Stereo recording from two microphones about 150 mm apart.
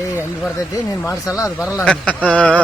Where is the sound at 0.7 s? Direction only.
20° left (ahead or behind).